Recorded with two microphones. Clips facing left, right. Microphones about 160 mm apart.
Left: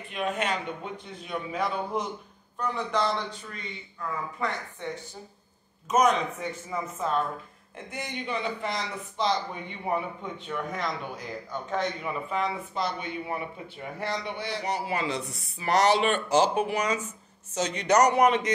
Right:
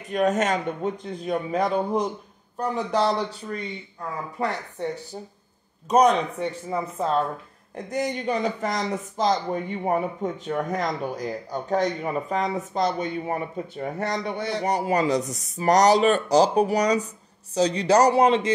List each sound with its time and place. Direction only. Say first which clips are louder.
0.1 s speech: right 8 dB; 40° right (ahead or behind)
4.4 s speech: right 4 dB; 35° right (ahead or behind)
5.9 s speech: right 5 dB; 35° right (ahead or behind)